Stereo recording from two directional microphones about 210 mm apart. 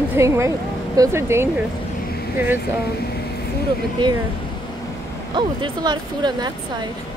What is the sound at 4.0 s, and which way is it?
Speech, 20° right (ahead or behind).